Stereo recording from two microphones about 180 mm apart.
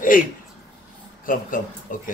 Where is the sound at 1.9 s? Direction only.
50° left (ahead or behind).